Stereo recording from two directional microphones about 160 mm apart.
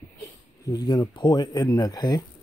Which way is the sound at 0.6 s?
25° left (ahead or behind).